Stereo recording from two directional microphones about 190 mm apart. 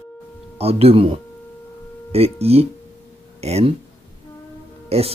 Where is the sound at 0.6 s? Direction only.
30° right (ahead or behind).